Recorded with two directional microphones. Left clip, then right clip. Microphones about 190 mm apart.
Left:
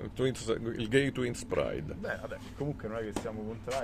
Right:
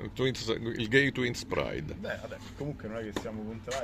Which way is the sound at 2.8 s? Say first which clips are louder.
Left 1 dB; 20° left (ahead or behind).